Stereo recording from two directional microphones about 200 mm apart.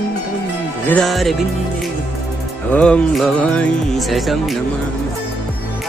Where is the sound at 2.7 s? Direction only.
5° left (ahead or behind).